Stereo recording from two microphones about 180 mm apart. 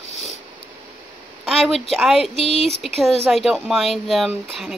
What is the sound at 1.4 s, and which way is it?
Speech, centre (ahead or behind).